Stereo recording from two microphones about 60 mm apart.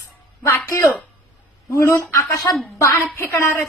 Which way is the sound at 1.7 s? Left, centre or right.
Left.